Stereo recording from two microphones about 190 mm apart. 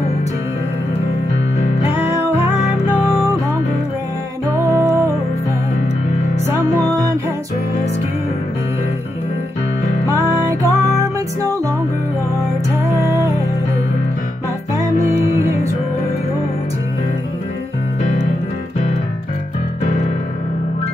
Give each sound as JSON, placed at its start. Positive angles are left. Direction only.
{"t": 4.6, "sound": "music", "side_deg": -15}
{"t": 10.0, "sound": "music", "side_deg": -15}
{"t": 12.7, "sound": "music", "side_deg": -15}
{"t": 14.8, "sound": "music", "side_deg": -15}